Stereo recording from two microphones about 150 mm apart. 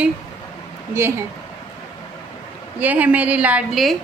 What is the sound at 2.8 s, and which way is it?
A woman's voice, 10° right (ahead or behind).